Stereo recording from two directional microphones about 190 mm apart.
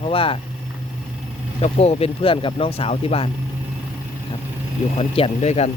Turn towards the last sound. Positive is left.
turn(degrees=35)  # may be behind; listen again after turning